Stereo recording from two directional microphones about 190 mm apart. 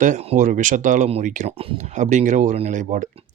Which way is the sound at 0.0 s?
35° right (ahead or behind).